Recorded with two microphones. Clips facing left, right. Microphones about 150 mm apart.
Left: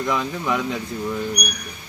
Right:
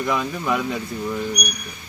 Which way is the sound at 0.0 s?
5° right (ahead or behind).